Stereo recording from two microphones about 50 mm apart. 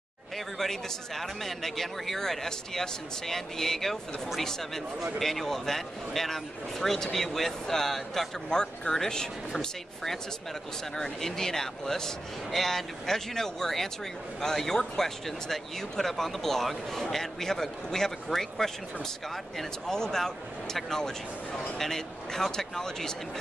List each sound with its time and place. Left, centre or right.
0.6 s a man's voice: centre
19.9 s speech: centre